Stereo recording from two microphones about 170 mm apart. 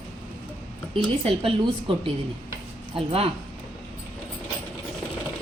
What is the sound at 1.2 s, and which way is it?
A woman's voice, 30° right (ahead or behind).